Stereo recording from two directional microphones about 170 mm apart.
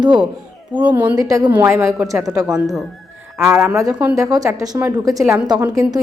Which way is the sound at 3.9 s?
10° right (ahead or behind).